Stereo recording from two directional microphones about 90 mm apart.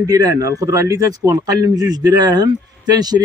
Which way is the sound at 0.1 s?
40° right (ahead or behind).